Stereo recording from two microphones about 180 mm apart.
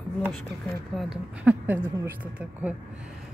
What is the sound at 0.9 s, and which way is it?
Speech, 5° right (ahead or behind).